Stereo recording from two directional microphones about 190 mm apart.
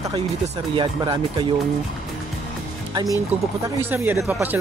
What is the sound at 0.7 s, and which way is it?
Speech, 25° right (ahead or behind).